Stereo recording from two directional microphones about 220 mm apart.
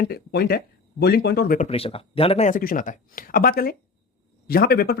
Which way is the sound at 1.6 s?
25° left (ahead or behind).